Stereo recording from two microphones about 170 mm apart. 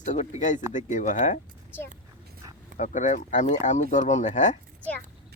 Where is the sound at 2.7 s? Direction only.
45° left (ahead or behind).